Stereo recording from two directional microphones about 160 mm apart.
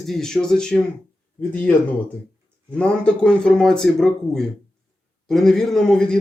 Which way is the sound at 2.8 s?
5° left (ahead or behind).